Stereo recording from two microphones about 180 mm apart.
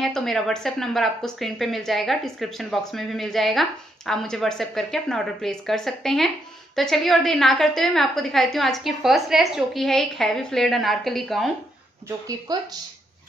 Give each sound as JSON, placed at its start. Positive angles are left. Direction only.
{"t": 0.0, "sound": "speech", "side_deg": 0}
{"t": 12.5, "sound": "speech", "side_deg": -20}